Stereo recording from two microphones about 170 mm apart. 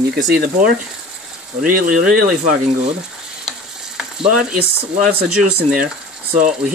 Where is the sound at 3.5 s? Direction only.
5° right (ahead or behind).